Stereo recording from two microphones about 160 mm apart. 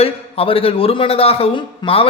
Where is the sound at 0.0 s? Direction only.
35° left (ahead or behind).